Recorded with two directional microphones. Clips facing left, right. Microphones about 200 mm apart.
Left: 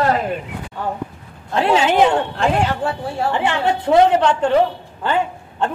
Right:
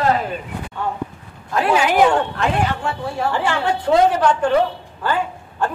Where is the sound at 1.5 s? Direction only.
25° left (ahead or behind).